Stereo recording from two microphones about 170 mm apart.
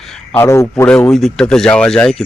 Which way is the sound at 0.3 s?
15° left (ahead or behind).